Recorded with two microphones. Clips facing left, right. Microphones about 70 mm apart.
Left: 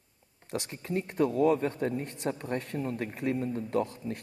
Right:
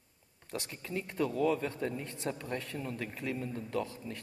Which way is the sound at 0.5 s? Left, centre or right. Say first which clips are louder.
Left 6 dB; left.